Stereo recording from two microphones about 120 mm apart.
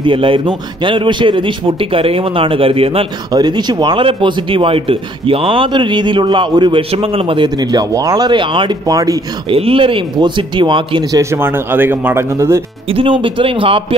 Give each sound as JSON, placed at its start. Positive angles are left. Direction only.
{"t": 0.0, "sound": "a man's voice", "side_deg": -45}
{"t": 3.3, "sound": "a man's voice", "side_deg": -35}
{"t": 6.9, "sound": "a man's voice", "side_deg": -55}
{"t": 8.9, "sound": "speech", "side_deg": -30}
{"t": 9.5, "sound": "a man's voice", "side_deg": -50}
{"t": 11.1, "sound": "speech", "side_deg": -25}
{"t": 12.9, "sound": "a man's voice", "side_deg": -45}